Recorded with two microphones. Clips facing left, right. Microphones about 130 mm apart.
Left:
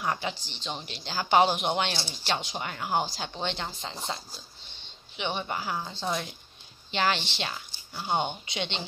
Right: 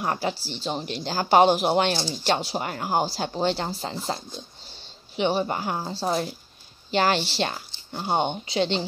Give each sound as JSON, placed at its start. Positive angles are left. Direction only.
{"t": 0.0, "sound": "speech", "side_deg": -40}